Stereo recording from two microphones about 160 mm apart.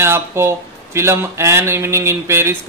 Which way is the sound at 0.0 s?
15° right (ahead or behind).